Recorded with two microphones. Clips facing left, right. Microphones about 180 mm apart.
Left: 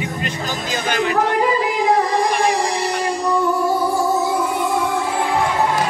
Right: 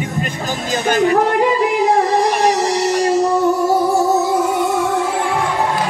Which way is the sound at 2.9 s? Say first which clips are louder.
Right 6 dB; 45° right (ahead or behind).